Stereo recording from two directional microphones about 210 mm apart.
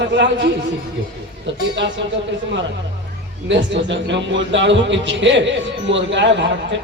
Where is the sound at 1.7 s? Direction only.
55° right (ahead or behind).